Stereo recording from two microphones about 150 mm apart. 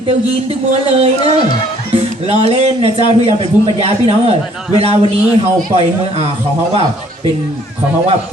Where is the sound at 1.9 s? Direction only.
40° right (ahead or behind).